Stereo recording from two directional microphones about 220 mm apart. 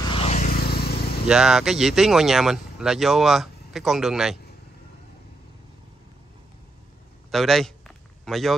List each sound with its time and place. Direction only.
0.1 s vehicle: 30° left (ahead or behind)
0.7 s vehicle: 45° left (ahead or behind)
1.2 s speech: centre (ahead or behind)
7.2 s a man's voice: centre (ahead or behind)